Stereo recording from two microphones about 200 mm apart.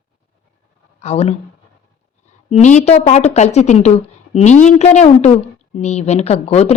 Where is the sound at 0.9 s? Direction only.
35° left (ahead or behind).